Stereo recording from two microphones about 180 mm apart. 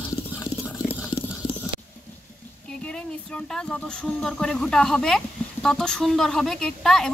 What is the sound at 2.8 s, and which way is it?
Speech, 5° left (ahead or behind).